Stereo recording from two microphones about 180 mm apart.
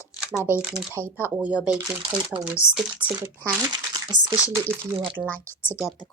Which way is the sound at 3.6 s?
25° right (ahead or behind).